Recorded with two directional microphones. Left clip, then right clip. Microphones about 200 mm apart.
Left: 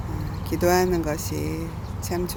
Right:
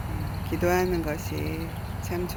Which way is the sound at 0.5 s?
15° left (ahead or behind).